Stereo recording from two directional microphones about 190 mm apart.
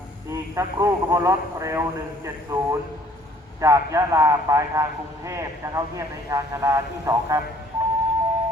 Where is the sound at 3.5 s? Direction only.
15° right (ahead or behind).